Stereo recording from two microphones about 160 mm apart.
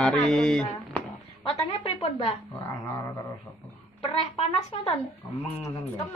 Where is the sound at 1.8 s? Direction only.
40° left (ahead or behind).